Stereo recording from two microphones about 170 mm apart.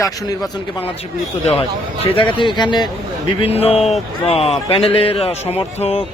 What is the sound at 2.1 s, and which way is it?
Speech, 30° left (ahead or behind).